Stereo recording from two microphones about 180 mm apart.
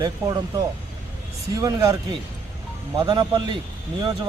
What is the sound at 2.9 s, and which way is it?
Speech, 25° right (ahead or behind).